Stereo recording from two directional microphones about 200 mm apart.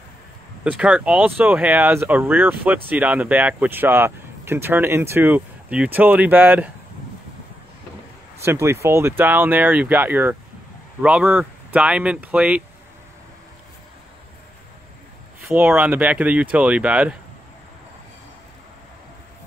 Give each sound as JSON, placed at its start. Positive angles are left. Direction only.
{"t": 0.7, "sound": "speech", "side_deg": -5}
{"t": 8.5, "sound": "speech", "side_deg": -15}
{"t": 15.5, "sound": "speech", "side_deg": -10}